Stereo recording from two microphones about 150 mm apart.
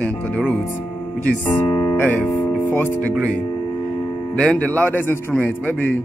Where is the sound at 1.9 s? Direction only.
10° left (ahead or behind).